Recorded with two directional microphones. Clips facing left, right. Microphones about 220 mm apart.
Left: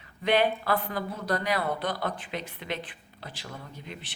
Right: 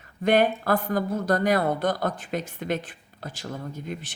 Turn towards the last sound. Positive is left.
turn(degrees=-45)  # may be behind; listen again after turning